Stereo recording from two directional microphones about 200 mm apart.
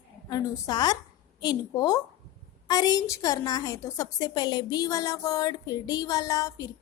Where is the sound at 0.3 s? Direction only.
15° left (ahead or behind).